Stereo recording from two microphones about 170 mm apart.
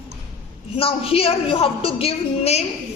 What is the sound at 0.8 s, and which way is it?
A woman's voice, 35° left (ahead or behind).